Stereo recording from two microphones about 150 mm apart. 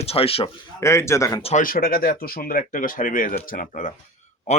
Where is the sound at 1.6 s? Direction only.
80° left.